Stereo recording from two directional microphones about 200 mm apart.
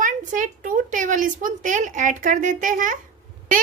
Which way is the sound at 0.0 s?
40° right (ahead or behind).